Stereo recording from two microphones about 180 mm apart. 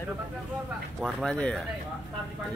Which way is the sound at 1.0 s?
5° left (ahead or behind).